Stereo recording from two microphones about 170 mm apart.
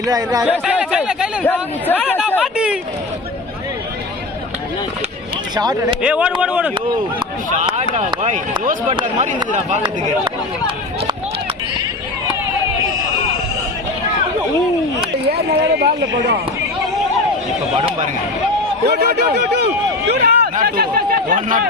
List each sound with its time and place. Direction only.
0.0 s speech: 20° right (ahead or behind)
0.6 s speech: 5° right (ahead or behind)
1.9 s speech: 10° left (ahead or behind)
2.4 s speech: 5° right (ahead or behind)
5.5 s speech: 20° right (ahead or behind)
6.0 s speech: 5° right (ahead or behind)
7.5 s speech: 40° right (ahead or behind)
15.3 s speech: 70° right (ahead or behind)
18.9 s a sound: 70° right (ahead or behind)
20.6 s speech: 60° right (ahead or behind)